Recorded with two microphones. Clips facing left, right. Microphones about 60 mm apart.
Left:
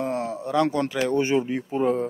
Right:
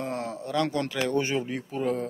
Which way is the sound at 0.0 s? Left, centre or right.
Centre.